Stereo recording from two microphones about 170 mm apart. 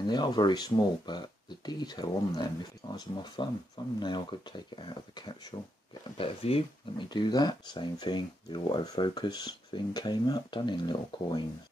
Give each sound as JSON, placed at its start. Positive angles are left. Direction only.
{"t": 0.0, "sound": "speech", "side_deg": 25}